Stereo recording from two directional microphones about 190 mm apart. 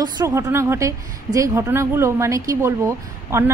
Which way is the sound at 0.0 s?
15° right (ahead or behind).